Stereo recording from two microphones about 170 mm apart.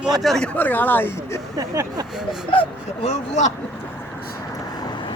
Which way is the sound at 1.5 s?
20° right (ahead or behind).